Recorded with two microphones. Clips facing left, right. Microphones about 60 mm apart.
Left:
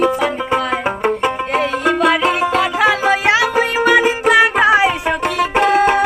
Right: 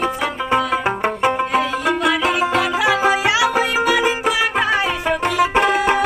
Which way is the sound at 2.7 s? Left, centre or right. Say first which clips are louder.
Left 2 dB; left.